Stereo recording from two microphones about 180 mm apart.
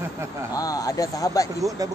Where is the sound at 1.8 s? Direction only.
20° right (ahead or behind).